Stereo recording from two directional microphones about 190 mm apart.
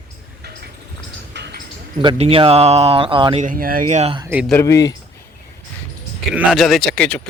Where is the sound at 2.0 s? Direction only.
25° right (ahead or behind).